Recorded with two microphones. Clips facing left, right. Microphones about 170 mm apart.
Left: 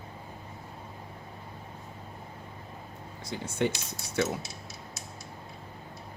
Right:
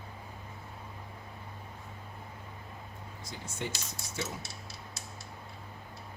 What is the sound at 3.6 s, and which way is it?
Speech, 65° left (ahead or behind).